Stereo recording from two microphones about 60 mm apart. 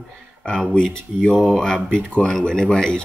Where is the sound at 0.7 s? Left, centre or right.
Centre.